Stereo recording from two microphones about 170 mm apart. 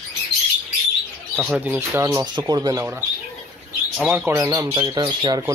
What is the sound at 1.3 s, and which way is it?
Speech, 10° right (ahead or behind).